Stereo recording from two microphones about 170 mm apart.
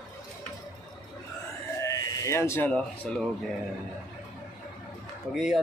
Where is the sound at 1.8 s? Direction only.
20° left (ahead or behind).